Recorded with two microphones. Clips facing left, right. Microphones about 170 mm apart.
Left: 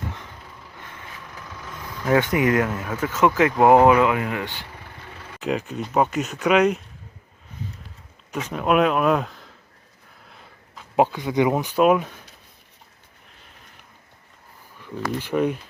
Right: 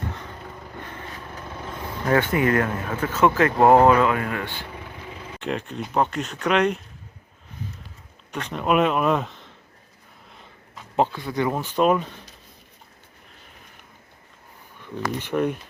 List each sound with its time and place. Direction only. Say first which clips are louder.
0.4 s a sound: right 6 dB; 50° right (ahead or behind)
1.5 s vehicle: right 4 dB; 25° right (ahead or behind)
2.0 s speech: left 1 dB; 10° left (ahead or behind)
5.4 s speech: left 3 dB; 5° left (ahead or behind)
8.3 s speech: left 1 dB; 5° left (ahead or behind)
10.9 s speech: left 3 dB; 10° left (ahead or behind)
14.8 s speech: left 1 dB; 5° left (ahead or behind)